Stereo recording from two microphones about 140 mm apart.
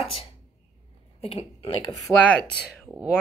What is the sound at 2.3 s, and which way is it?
Speech, 5° left (ahead or behind).